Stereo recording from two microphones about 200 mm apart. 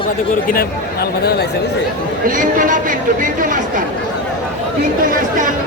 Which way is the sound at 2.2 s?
40° right (ahead or behind).